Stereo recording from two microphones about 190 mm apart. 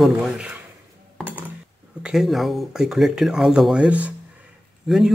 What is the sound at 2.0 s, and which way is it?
Speech, centre (ahead or behind).